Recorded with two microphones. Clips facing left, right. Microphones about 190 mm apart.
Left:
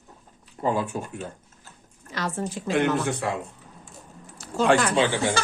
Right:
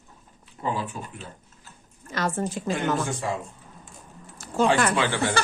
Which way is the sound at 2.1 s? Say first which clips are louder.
Right 2 dB; 50° right (ahead or behind).